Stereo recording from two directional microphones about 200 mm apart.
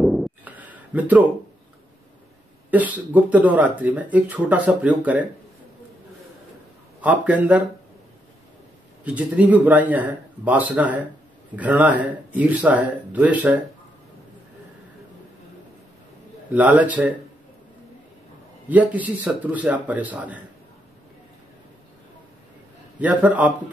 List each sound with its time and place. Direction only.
0.0 s a sound: centre (ahead or behind)
2.7 s speech: 10° right (ahead or behind)
7.0 s speech: 5° right (ahead or behind)
9.0 s speech: 5° right (ahead or behind)
16.5 s speech: 10° right (ahead or behind)
18.7 s speech: 10° right (ahead or behind)
22.9 s speech: 5° right (ahead or behind)